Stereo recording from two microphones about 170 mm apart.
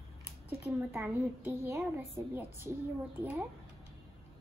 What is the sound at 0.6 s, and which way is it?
A woman's voice, 10° right (ahead or behind).